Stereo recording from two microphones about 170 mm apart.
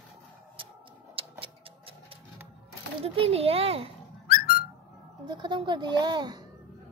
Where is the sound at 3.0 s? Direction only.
35° right (ahead or behind).